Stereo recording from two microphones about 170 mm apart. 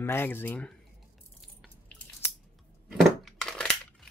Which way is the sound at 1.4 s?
Centre (ahead or behind).